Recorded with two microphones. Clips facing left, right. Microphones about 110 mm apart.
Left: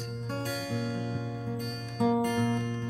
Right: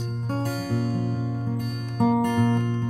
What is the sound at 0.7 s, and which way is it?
Music, 45° right (ahead or behind).